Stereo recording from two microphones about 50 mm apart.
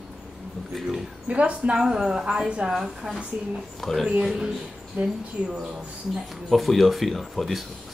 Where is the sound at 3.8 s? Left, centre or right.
Centre.